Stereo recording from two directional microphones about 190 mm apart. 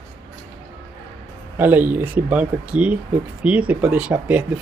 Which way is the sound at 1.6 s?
10° right (ahead or behind).